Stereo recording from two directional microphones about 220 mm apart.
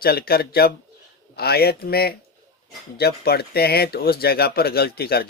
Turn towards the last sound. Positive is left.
turn(degrees=45)  # may be behind; listen again after turning